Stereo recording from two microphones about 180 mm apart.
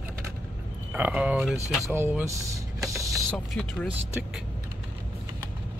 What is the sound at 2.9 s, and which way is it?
Mechanisms, 15° right (ahead or behind).